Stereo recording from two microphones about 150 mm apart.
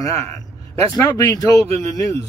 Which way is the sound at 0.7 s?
20° left (ahead or behind).